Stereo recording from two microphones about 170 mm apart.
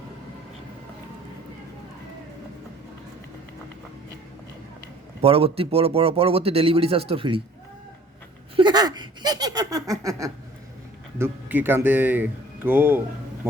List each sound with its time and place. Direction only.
5.2 s speech: 35° right (ahead or behind)
8.5 s a sound: 25° right (ahead or behind)
11.2 s speech: 10° right (ahead or behind)